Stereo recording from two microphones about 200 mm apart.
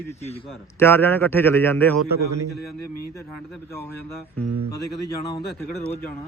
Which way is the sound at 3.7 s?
10° left (ahead or behind).